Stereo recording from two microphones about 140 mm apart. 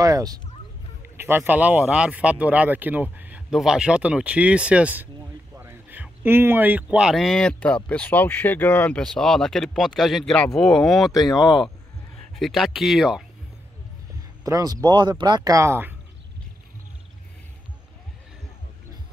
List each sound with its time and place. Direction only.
0.0 s speech: 25° right (ahead or behind); by 13.2 s centre (ahead or behind)
14.4 s speech: 25° right (ahead or behind)